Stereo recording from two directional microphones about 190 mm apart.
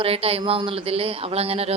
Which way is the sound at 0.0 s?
30° right (ahead or behind).